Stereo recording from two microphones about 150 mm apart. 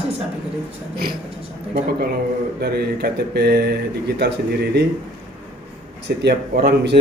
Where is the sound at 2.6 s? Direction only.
90° right.